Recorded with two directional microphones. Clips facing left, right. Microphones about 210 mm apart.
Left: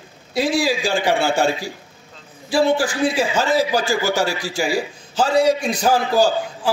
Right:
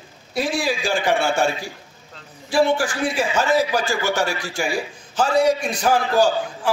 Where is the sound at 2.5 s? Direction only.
30° left (ahead or behind).